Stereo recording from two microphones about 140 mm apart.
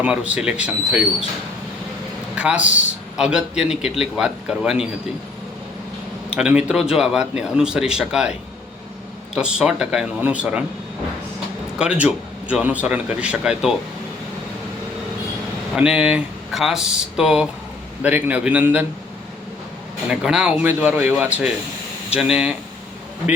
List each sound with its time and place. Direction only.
0.0 s speech: 10° right (ahead or behind)
2.3 s a man's voice: 10° right (ahead or behind)
6.3 s a man's voice: 10° right (ahead or behind)
11.8 s speech: 5° right (ahead or behind)
15.7 s a man's voice: 5° right (ahead or behind)
20.1 s speech: 5° right (ahead or behind)